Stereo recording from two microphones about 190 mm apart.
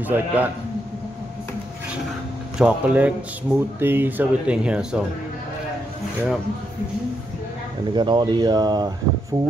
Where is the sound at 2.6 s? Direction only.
5° right (ahead or behind).